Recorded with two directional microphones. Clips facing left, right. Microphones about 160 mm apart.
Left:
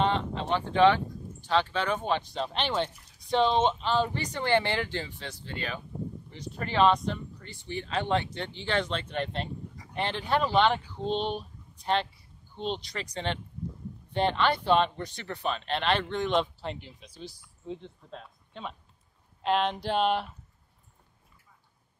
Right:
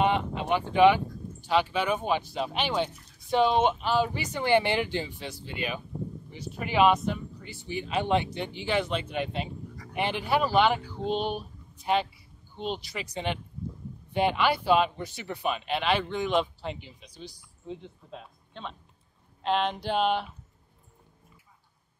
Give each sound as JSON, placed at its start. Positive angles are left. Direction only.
{"t": 0.0, "sound": "speech", "side_deg": -10}